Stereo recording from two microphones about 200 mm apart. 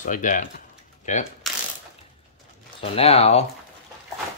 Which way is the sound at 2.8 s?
30° left (ahead or behind).